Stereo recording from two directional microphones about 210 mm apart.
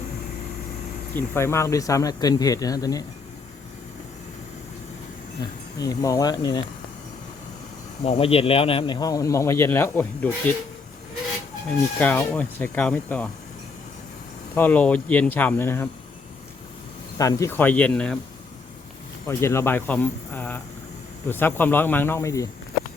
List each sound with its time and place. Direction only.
1.1 s speech: 10° left (ahead or behind)
5.8 s speech: 15° left (ahead or behind)
8.0 s speech: 25° left (ahead or behind); by 10.5 s 10° left (ahead or behind)
11.9 s speech: 5° left (ahead or behind)
14.5 s speech: 10° left (ahead or behind)
17.2 s speech: 15° left (ahead or behind)
19.3 s speech: 15° left (ahead or behind)